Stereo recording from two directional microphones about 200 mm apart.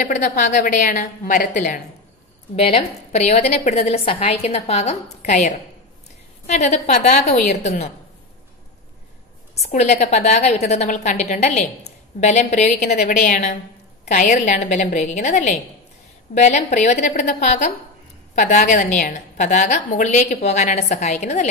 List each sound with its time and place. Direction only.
0.0 s a woman's voice: 40° left (ahead or behind)
2.5 s a woman's voice: 30° left (ahead or behind)
9.6 s a woman's voice: 35° left (ahead or behind)